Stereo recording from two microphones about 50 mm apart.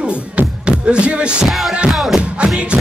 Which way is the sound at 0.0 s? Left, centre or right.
Right.